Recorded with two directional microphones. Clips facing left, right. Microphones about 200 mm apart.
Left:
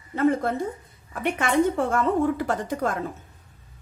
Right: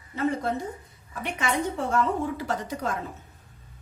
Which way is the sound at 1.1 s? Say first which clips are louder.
Left 5 dB; 55° left (ahead or behind).